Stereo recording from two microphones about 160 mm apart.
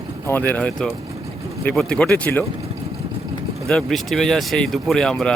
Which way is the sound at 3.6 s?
Centre (ahead or behind).